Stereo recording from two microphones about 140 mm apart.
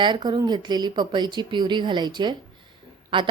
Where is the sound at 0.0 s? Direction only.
30° right (ahead or behind).